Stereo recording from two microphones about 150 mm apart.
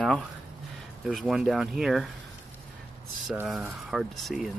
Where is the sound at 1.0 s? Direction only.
5° right (ahead or behind).